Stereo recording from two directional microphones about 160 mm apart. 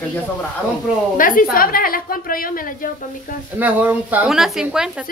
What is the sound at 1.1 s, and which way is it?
A woman's voice, 60° left (ahead or behind).